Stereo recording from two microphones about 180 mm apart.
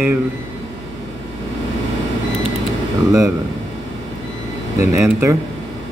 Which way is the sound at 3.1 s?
15° right (ahead or behind).